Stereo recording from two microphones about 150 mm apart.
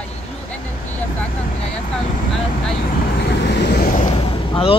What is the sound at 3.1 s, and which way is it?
Vehicle, 90° left.